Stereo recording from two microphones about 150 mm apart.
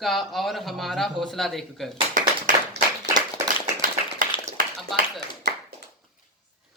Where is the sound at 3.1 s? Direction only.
25° right (ahead or behind).